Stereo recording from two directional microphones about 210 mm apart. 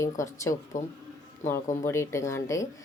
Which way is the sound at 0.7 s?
40° left (ahead or behind).